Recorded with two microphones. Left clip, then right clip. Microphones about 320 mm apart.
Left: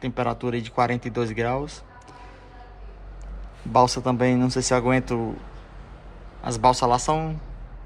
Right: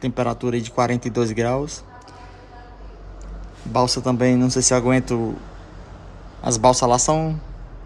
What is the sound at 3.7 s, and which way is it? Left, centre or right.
Speech, centre.